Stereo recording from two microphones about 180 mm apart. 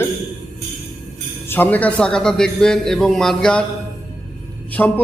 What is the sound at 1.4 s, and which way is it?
A man's voice, 10° left (ahead or behind).